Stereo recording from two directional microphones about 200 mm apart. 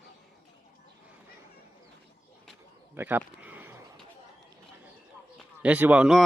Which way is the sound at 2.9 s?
10° right (ahead or behind).